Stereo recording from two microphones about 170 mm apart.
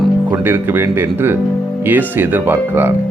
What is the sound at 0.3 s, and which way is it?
Speech, 10° right (ahead or behind).